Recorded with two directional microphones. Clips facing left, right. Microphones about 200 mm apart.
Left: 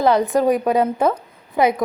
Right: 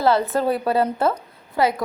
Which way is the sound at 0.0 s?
15° left (ahead or behind).